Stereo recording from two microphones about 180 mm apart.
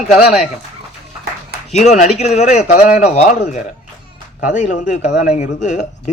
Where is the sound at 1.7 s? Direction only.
40° left (ahead or behind).